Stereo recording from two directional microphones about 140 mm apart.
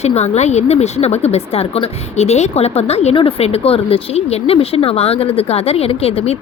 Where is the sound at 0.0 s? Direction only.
50° left (ahead or behind).